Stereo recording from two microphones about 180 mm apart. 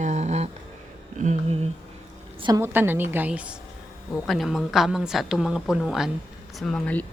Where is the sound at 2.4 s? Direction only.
25° right (ahead or behind).